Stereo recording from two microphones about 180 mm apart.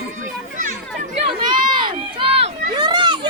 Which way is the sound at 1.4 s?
25° right (ahead or behind).